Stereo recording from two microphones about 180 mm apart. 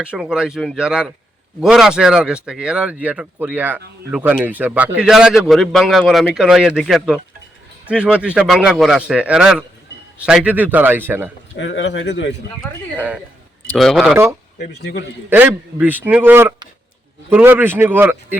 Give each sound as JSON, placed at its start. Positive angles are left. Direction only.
{"t": 0.0, "sound": "a man's voice", "side_deg": -5}
{"t": 11.5, "sound": "speech", "side_deg": 90}
{"t": 13.7, "sound": "speech", "side_deg": 0}
{"t": 15.3, "sound": "a man's voice", "side_deg": -10}